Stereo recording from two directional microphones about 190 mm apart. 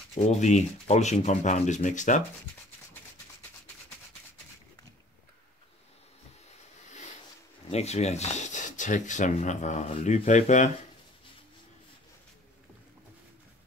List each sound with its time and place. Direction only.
0.1 s speech: 40° left (ahead or behind)
7.7 s speech: 35° left (ahead or behind)